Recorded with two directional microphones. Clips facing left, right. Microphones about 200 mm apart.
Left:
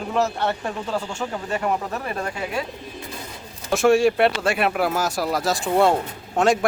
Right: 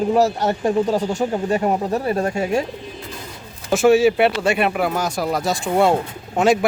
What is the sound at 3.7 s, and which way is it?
Speech, centre (ahead or behind).